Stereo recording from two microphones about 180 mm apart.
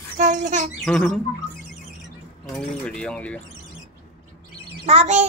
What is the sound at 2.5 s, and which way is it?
Speech, 5° left (ahead or behind).